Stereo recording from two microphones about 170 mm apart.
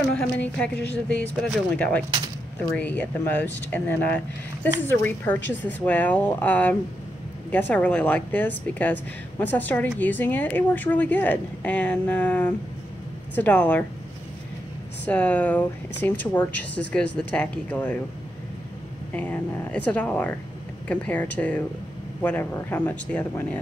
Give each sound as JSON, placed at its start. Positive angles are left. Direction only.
{"t": 0.1, "sound": "speech", "side_deg": 5}
{"t": 15.0, "sound": "speech", "side_deg": 10}
{"t": 19.1, "sound": "speech", "side_deg": 10}